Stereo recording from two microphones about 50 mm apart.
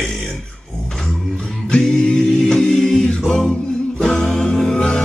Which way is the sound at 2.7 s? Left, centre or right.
Centre.